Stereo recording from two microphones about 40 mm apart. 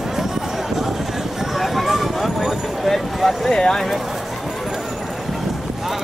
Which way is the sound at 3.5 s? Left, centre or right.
Centre.